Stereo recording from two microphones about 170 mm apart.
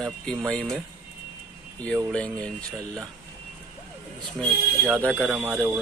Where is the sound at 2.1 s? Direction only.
5° left (ahead or behind).